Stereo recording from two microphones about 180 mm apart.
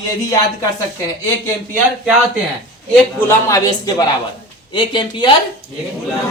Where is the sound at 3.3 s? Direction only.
15° left (ahead or behind).